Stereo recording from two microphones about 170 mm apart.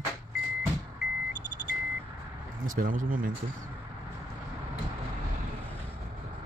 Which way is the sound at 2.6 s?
55° right (ahead or behind).